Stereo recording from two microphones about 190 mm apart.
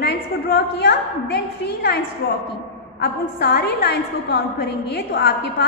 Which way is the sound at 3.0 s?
60° left (ahead or behind).